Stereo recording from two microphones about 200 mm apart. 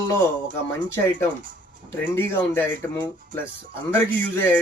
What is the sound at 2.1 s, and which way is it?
Speech, 10° left (ahead or behind).